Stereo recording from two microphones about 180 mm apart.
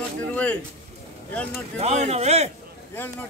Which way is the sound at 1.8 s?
35° right (ahead or behind).